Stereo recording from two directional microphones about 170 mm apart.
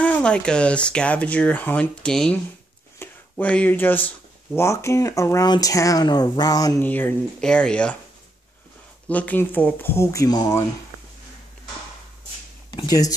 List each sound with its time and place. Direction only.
0.0 s speech: 5° left (ahead or behind); by 6.7 s 25° left (ahead or behind)
6.8 s speech: 10° left (ahead or behind)
9.1 s speech: 10° left (ahead or behind)
12.7 s speech: 20° left (ahead or behind)